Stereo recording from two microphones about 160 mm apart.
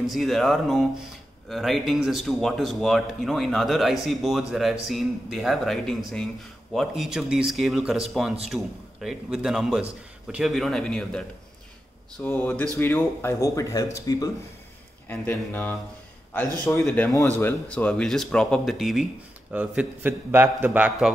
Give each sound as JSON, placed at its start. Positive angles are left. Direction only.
{"t": 0.1, "sound": "speech", "side_deg": 0}
{"t": 12.3, "sound": "speech", "side_deg": 10}
{"t": 15.0, "sound": "speech", "side_deg": 10}
{"t": 16.8, "sound": "a man's voice", "side_deg": 10}